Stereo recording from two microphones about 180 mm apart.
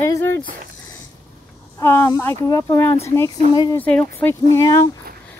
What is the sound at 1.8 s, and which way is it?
Speech, 15° left (ahead or behind).